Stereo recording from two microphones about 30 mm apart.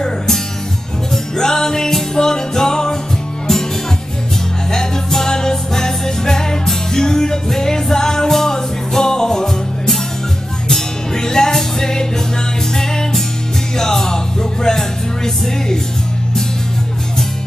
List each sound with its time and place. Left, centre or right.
1.1 s music: centre
4.6 s music: centre
11.1 s music: left
13.7 s music: centre